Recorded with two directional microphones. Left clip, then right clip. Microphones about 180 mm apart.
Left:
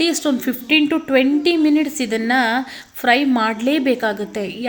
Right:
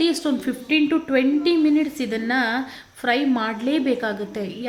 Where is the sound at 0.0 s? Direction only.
15° left (ahead or behind).